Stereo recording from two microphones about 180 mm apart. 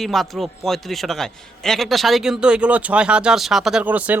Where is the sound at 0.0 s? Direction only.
Centre (ahead or behind).